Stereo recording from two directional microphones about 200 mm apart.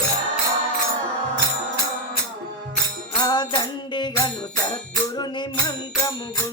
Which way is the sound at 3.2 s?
20° left (ahead or behind).